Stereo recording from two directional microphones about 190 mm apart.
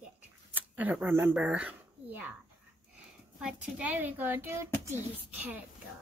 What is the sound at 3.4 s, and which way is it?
A child's voice, 10° right (ahead or behind).